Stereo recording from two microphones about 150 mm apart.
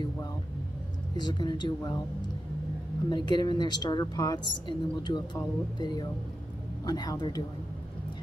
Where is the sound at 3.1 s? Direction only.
30° left (ahead or behind).